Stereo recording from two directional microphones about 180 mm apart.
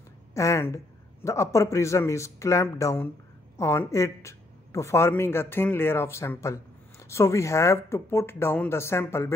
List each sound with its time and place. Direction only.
0.3 s speech: 15° left (ahead or behind)